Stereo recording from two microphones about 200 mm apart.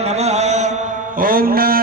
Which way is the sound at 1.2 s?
45° right (ahead or behind).